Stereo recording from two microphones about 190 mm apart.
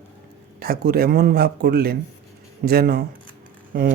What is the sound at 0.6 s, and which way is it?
Speech, 50° right (ahead or behind).